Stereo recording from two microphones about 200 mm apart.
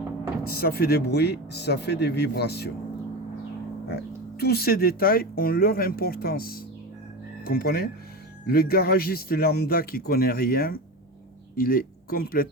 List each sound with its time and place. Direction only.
0.4 s speech: 50° left (ahead or behind)
3.8 s speech: 55° left (ahead or behind)